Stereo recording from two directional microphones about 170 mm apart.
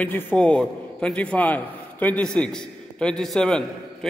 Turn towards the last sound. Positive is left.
turn(degrees=5)  # may be behind; listen again after turning